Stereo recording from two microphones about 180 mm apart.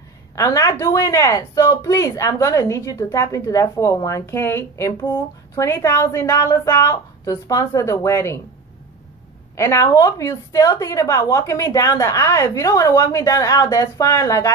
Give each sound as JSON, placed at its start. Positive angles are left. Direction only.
{"t": 0.4, "sound": "a woman's voice", "side_deg": 15}
{"t": 9.6, "sound": "a woman's voice", "side_deg": 15}